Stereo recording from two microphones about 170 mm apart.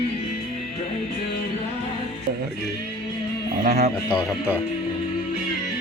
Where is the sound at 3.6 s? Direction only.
50° right (ahead or behind).